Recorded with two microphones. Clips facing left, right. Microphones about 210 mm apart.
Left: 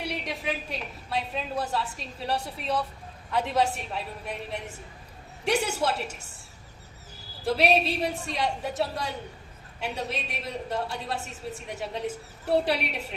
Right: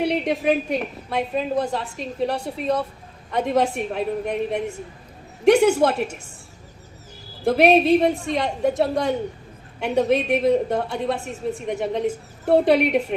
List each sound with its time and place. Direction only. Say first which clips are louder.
0.0 s a woman's voice: right 12 dB; 55° right (ahead or behind)
7.4 s a woman's voice: right 8 dB; 55° right (ahead or behind)
9.8 s a woman's voice: right 13 dB; 55° right (ahead or behind)